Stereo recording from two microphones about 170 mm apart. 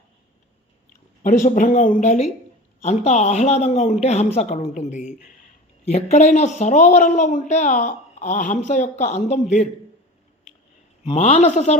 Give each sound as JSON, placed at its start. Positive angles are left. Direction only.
{"t": 1.2, "sound": "a man's voice", "side_deg": 50}
{"t": 11.0, "sound": "a man's voice", "side_deg": 35}